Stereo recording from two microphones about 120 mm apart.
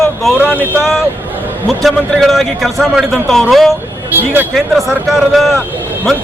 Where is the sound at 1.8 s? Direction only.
Centre (ahead or behind).